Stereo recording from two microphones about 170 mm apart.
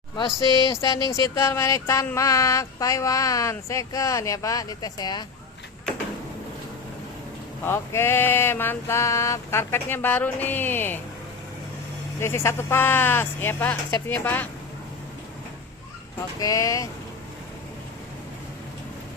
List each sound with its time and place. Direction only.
0.3 s speech: 20° left (ahead or behind)
7.6 s mantra: 15° left (ahead or behind)
12.2 s mantra: 15° left (ahead or behind)
16.4 s speech: 20° left (ahead or behind)